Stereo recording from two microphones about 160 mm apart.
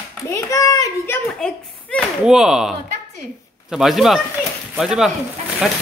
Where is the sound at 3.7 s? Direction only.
Centre (ahead or behind).